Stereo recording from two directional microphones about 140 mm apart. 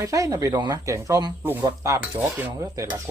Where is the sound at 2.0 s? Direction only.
10° right (ahead or behind).